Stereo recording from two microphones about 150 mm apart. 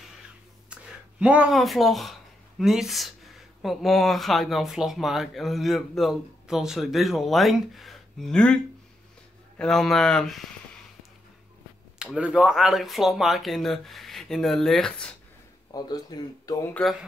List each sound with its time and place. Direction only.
1.2 s speech: 10° right (ahead or behind)
9.6 s speech: centre (ahead or behind)
12.0 s speech: 5° right (ahead or behind)
15.7 s speech: 25° left (ahead or behind)